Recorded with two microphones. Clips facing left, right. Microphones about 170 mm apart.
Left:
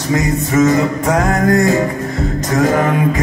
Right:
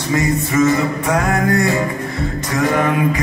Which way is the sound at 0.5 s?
45° left (ahead or behind).